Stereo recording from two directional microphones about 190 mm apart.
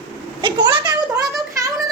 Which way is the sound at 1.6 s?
15° right (ahead or behind).